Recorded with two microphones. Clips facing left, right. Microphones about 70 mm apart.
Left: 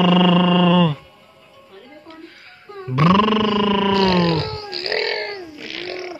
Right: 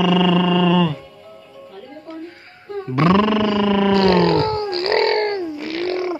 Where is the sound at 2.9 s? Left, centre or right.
Right.